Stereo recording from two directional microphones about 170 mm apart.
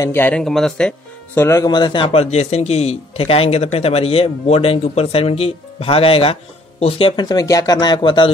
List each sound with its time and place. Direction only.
0.0 s speech: 10° left (ahead or behind); by 8.3 s 30° left (ahead or behind)